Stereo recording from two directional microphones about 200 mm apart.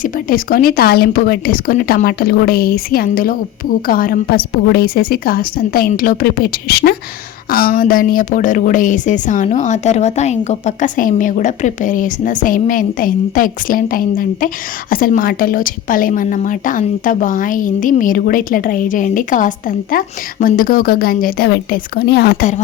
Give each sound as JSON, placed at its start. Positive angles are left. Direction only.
{"t": 0.0, "sound": "a woman's voice", "side_deg": 45}